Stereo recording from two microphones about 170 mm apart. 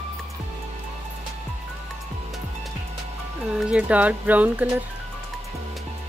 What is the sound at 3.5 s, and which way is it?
Speech, 5° right (ahead or behind).